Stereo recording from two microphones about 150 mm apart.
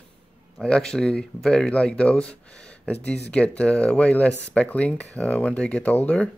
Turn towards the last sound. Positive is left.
turn(degrees=10)  # may be behind; listen again after turning